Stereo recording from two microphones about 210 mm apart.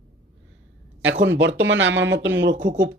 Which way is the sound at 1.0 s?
60° right (ahead or behind).